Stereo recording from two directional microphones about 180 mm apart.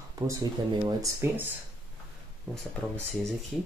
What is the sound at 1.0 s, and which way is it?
Speech, 15° right (ahead or behind).